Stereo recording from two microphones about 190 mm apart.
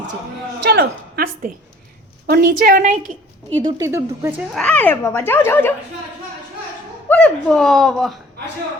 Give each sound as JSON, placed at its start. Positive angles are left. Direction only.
{"t": 0.6, "sound": "a woman's voice", "side_deg": -55}
{"t": 3.6, "sound": "speech", "side_deg": -20}
{"t": 4.5, "sound": "a child's voice", "side_deg": 5}
{"t": 7.1, "sound": "speech", "side_deg": 5}